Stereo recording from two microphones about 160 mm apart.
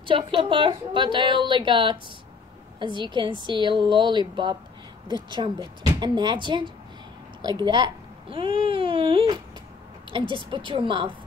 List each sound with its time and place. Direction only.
0.0 s a woman's voice: 35° right (ahead or behind)
8.6 s a sound: 35° right (ahead or behind)
10.1 s a woman's voice: 30° right (ahead or behind)